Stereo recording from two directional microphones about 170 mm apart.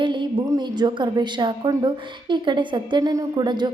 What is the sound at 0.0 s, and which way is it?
A woman's voice, 30° right (ahead or behind).